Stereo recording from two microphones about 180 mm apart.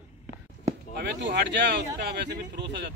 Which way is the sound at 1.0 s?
75° right (ahead or behind).